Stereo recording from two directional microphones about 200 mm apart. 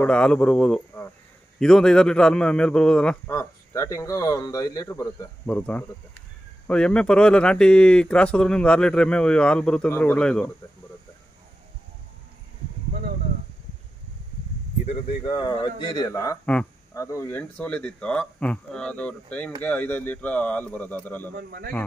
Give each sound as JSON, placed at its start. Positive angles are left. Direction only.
{"t": 0.0, "sound": "speech", "side_deg": 5}
{"t": 3.3, "sound": "speech", "side_deg": 15}
{"t": 14.9, "sound": "speech", "side_deg": 25}
{"t": 21.4, "sound": "a man's voice", "side_deg": -50}